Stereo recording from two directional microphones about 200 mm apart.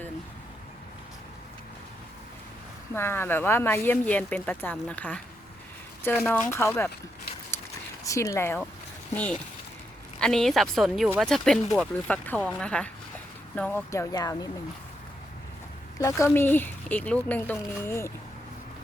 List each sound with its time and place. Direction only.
2.9 s a woman's voice: 10° left (ahead or behind)
8.0 s a woman's voice: 15° left (ahead or behind)
10.2 s a woman's voice: 5° left (ahead or behind); by 14.5 s 20° left (ahead or behind)
16.0 s a woman's voice: 15° left (ahead or behind)